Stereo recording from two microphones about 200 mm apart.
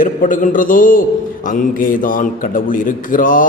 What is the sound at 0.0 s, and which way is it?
A man's voice, 40° left (ahead or behind).